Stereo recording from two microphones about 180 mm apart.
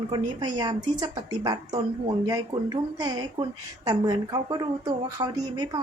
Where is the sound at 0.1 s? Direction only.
25° right (ahead or behind).